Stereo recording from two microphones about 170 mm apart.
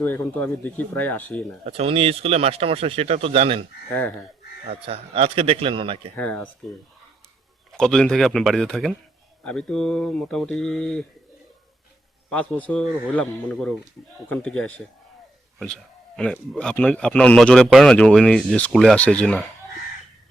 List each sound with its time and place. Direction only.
0.0 s a man's voice: 10° left (ahead or behind)
1.6 s speech: 35° right (ahead or behind)
6.1 s a man's voice: 10° left (ahead or behind)
7.7 s a man's voice: 5° left (ahead or behind)
12.3 s a man's voice: 10° left (ahead or behind)